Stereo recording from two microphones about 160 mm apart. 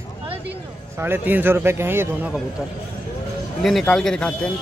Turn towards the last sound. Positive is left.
turn(degrees=5)  # may be behind; listen again after turning